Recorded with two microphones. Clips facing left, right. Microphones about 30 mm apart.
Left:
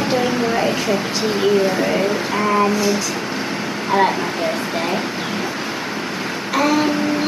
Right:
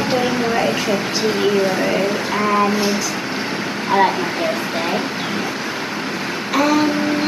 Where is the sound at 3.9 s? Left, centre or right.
Centre.